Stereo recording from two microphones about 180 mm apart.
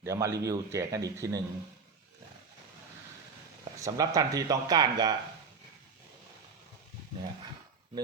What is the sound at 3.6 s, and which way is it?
Speech, 20° right (ahead or behind).